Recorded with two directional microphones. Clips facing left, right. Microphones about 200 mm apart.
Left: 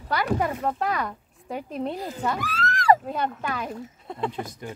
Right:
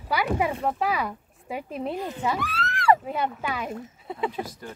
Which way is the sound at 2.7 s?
40° left (ahead or behind).